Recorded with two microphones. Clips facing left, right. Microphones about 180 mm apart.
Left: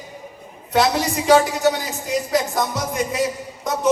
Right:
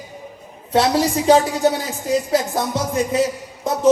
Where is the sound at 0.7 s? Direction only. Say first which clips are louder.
Right 2 dB; 30° right (ahead or behind).